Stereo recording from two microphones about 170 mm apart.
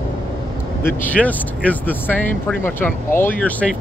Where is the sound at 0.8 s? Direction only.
10° left (ahead or behind).